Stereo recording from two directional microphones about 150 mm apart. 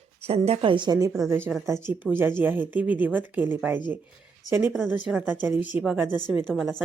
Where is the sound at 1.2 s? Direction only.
15° right (ahead or behind).